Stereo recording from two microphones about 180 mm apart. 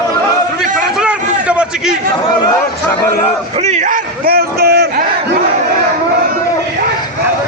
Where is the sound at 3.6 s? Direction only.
40° right (ahead or behind); by 5.0 s 60° right (ahead or behind).